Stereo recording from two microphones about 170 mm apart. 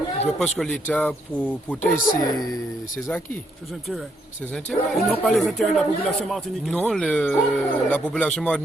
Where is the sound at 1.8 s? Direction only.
50° left (ahead or behind).